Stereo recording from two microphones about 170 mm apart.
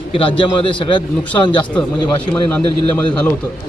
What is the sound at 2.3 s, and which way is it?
Speech, 10° left (ahead or behind).